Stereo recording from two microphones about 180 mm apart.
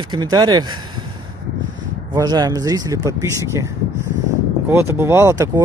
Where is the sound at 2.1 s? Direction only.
20° right (ahead or behind).